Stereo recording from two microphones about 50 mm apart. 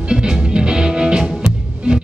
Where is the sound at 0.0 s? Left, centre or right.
Centre.